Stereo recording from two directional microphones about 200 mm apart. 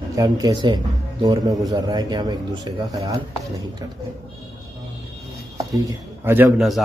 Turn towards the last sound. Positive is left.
turn(degrees=0)  # may be behind; listen again after turning